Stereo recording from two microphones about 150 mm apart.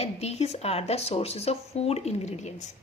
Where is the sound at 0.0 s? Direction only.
45° left (ahead or behind).